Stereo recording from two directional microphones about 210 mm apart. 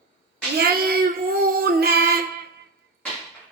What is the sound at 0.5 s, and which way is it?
Child singing, 45° right (ahead or behind).